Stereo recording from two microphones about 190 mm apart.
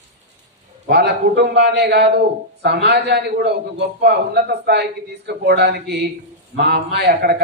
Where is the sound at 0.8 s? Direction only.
60° right (ahead or behind).